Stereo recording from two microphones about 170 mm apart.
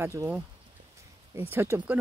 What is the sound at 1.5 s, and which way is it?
Speech, 15° right (ahead or behind).